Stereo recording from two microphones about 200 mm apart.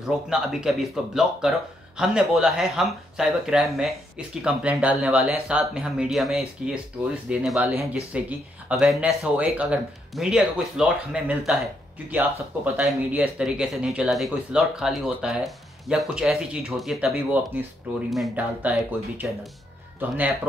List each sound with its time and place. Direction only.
0.0 s speech: centre (ahead or behind)